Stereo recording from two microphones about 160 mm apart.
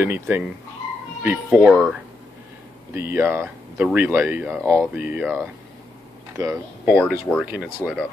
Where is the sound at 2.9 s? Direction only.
15° right (ahead or behind).